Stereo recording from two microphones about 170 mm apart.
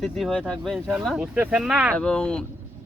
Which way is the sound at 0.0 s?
Centre (ahead or behind).